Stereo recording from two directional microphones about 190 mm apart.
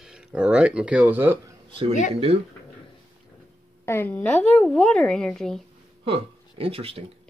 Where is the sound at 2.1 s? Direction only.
30° right (ahead or behind).